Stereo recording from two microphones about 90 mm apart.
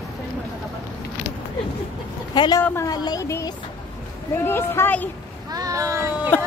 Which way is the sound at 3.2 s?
35° left (ahead or behind).